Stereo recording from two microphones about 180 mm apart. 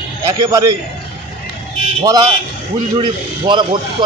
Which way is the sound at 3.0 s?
25° right (ahead or behind).